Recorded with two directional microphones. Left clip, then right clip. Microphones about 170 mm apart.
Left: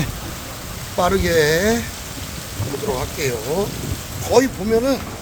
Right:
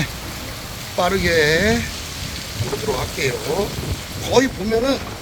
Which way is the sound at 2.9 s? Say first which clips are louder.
Right 1 dB; 15° left (ahead or behind).